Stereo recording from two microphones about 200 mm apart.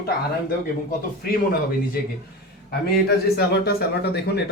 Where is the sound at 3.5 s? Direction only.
55° left (ahead or behind).